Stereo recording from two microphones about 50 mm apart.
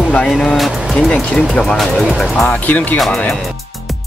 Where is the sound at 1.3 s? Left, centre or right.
Centre.